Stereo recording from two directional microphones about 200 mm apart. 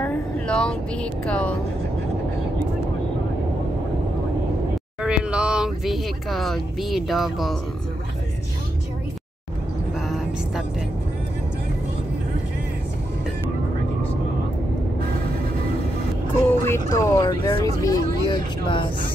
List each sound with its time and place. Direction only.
0.0 s vehicle: 5° left (ahead or behind)
1.2 s speech: 5° left (ahead or behind)
5.0 s speech: 5° right (ahead or behind)
9.9 s vehicle: centre (ahead or behind)
16.4 s a sound: 10° left (ahead or behind)
16.9 s speech: 15° left (ahead or behind)